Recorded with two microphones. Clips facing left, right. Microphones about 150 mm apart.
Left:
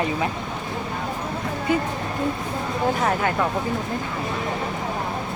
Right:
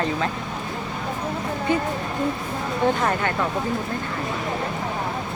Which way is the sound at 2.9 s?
5° left (ahead or behind).